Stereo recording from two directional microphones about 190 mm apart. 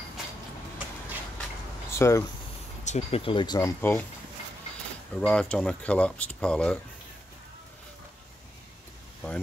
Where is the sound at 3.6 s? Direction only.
10° left (ahead or behind).